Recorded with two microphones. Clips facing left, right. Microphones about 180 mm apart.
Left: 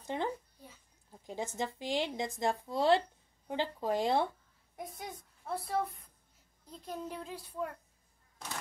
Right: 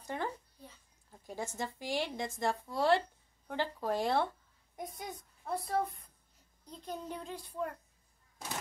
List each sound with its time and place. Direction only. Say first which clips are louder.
0.0 s a sound: left 2 dB; 20° left (ahead or behind)
1.2 s a woman's voice: left 2 dB; 20° left (ahead or behind)
4.7 s a woman's voice: right 1 dB; centre (ahead or behind)